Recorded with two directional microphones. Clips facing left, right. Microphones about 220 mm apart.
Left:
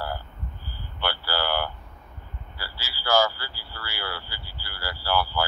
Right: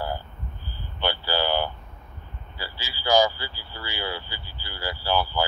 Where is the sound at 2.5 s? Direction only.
20° right (ahead or behind).